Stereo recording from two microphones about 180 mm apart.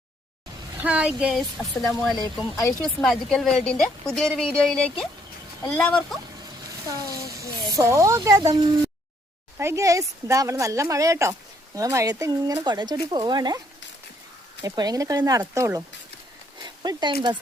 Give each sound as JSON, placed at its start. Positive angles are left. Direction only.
{"t": 0.8, "sound": "a woman's voice", "side_deg": -5}
{"t": 6.8, "sound": "speech", "side_deg": -20}
{"t": 14.6, "sound": "speech", "side_deg": -20}